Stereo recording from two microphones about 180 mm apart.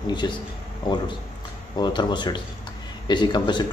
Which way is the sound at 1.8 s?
25° left (ahead or behind).